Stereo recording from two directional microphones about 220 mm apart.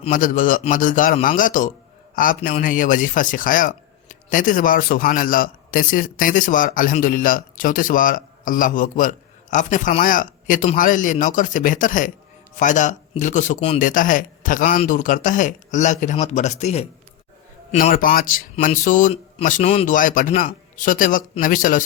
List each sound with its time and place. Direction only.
0.0 s speech: 35° left (ahead or behind)